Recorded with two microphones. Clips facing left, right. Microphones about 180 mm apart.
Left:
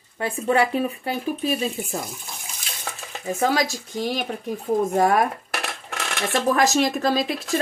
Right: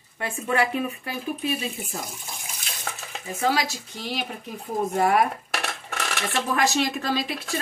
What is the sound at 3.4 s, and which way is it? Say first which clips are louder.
Speech: left 2 dB; 45° left (ahead or behind).